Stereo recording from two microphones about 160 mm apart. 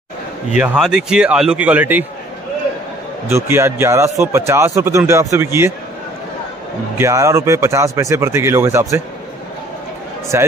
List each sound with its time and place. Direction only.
0.6 s a man's voice: 5° right (ahead or behind)
3.3 s speech: 15° right (ahead or behind)
7.0 s speech: 20° right (ahead or behind)
10.3 s speech: 15° right (ahead or behind)